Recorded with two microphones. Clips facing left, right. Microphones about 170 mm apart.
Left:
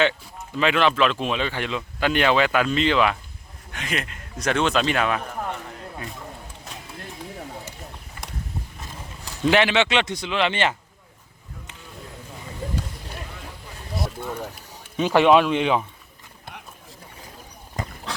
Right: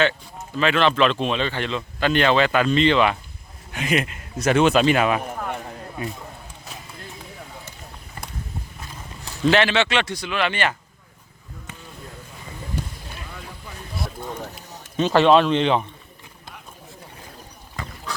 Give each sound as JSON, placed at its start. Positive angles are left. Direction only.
{"t": 0.0, "sound": "speech", "side_deg": 15}
{"t": 3.7, "sound": "speech", "side_deg": -10}
{"t": 9.5, "sound": "a man's voice", "side_deg": 15}
{"t": 14.3, "sound": "speech", "side_deg": 10}